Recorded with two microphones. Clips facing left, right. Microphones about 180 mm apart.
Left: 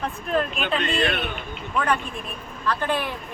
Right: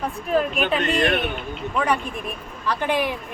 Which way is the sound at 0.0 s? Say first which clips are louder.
Right 3 dB; 10° right (ahead or behind).